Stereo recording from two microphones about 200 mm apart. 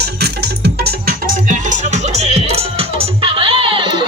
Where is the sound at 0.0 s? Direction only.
55° right (ahead or behind).